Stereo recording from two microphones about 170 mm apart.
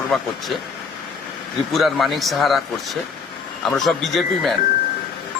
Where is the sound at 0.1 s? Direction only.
Centre (ahead or behind).